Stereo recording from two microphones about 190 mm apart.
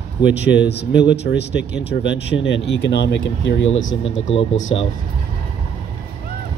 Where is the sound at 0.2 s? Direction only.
65° left (ahead or behind); by 4.4 s 90° left.